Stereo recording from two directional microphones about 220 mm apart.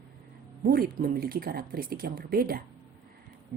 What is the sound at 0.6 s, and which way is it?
A woman's voice, 45° right (ahead or behind).